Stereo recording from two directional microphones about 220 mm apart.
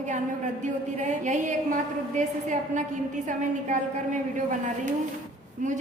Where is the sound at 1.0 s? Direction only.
35° right (ahead or behind).